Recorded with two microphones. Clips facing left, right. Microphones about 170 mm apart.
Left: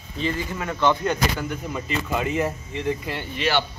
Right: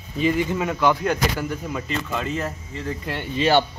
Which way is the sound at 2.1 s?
15° left (ahead or behind).